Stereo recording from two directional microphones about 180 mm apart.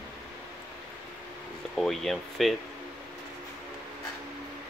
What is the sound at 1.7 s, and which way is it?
Speech, centre (ahead or behind).